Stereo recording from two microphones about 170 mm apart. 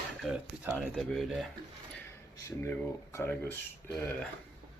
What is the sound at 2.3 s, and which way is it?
Speech, 15° left (ahead or behind).